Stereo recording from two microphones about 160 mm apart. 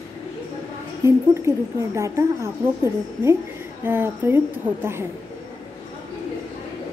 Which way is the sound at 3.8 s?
15° right (ahead or behind).